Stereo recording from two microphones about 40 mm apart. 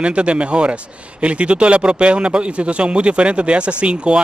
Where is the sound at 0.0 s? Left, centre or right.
Right.